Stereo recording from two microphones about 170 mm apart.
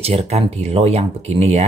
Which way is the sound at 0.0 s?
35° right (ahead or behind).